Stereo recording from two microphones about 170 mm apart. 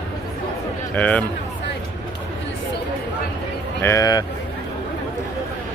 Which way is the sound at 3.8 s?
20° left (ahead or behind).